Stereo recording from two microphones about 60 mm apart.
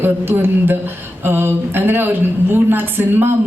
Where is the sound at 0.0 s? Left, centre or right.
Right.